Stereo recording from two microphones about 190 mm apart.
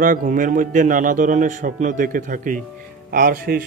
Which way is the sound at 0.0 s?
45° right (ahead or behind).